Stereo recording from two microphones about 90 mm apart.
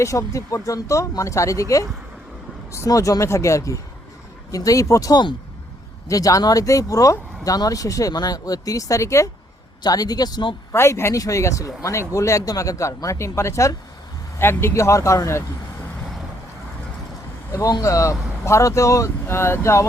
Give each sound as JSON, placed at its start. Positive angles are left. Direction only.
{"t": 0.0, "sound": "speech", "side_deg": 35}
{"t": 9.8, "sound": "speech", "side_deg": 45}
{"t": 10.7, "sound": "speech", "side_deg": 30}
{"t": 17.7, "sound": "speech", "side_deg": 40}